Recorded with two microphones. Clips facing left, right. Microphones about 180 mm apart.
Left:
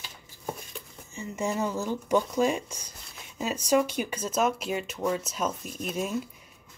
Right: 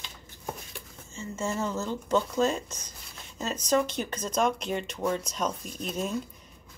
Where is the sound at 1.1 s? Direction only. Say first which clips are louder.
Left 2 dB; 15° left (ahead or behind).